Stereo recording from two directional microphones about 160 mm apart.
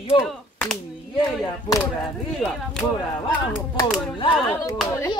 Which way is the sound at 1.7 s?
20° left (ahead or behind).